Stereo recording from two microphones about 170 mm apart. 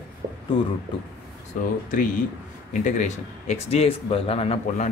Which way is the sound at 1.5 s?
50° left (ahead or behind).